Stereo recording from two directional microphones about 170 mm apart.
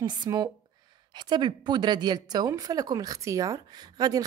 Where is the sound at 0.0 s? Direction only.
25° right (ahead or behind).